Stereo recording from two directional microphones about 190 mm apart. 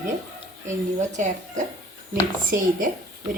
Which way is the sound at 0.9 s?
40° right (ahead or behind).